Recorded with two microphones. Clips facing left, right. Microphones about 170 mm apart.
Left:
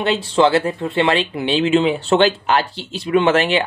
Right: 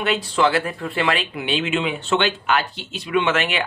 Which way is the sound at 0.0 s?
30° left (ahead or behind).